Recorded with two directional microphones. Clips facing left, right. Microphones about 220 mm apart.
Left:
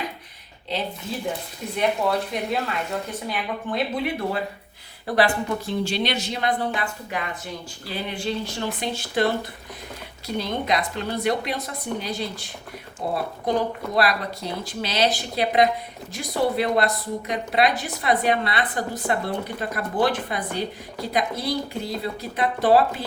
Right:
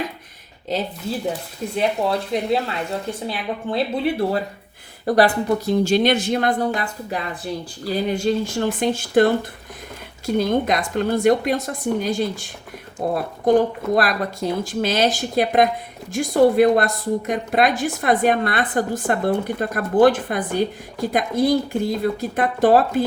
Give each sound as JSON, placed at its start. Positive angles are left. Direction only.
{"t": 0.7, "sound": "a woman's voice", "side_deg": -40}
{"t": 1.7, "sound": "a woman's voice", "side_deg": -30}
{"t": 6.7, "sound": "a woman's voice", "side_deg": -35}